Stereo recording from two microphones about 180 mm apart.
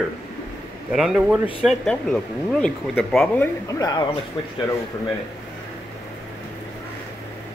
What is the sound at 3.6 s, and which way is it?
Speech, 20° left (ahead or behind).